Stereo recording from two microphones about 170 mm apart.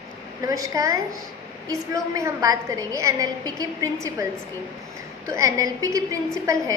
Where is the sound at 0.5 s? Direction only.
20° right (ahead or behind).